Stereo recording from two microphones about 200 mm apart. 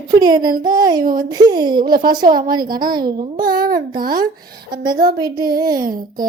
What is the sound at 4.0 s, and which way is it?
Speech, 45° right (ahead or behind).